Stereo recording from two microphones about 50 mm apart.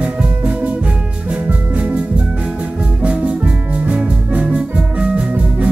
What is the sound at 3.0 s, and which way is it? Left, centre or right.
Music, right.